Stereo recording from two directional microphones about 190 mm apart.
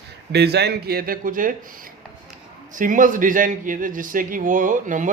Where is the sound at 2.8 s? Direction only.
45° right (ahead or behind).